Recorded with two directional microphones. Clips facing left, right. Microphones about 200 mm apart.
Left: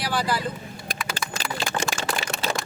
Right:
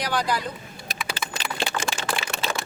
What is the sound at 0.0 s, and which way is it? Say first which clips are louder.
Speech: even; 5° left (ahead or behind).